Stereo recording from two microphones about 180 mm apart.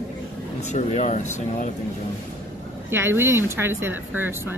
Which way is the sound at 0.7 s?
40° left (ahead or behind).